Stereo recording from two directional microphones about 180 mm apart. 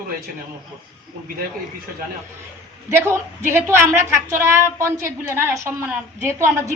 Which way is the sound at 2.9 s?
15° right (ahead or behind).